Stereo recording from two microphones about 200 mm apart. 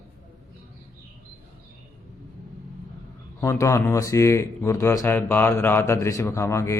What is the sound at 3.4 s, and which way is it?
Speech, 15° left (ahead or behind).